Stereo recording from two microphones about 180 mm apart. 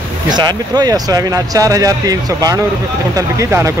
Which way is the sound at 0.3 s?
25° right (ahead or behind).